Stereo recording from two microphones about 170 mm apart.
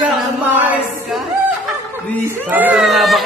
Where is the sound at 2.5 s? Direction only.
10° right (ahead or behind).